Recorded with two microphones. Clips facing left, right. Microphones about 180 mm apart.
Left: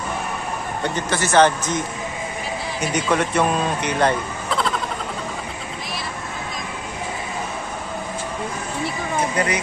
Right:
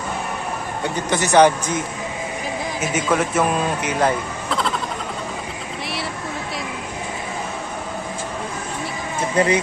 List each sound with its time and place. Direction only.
1.1 s a man's voice: 15° right (ahead or behind)
3.1 s speech: 5° right (ahead or behind)
9.4 s speech: 30° right (ahead or behind)